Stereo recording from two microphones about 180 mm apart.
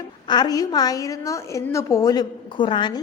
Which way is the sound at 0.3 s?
20° left (ahead or behind).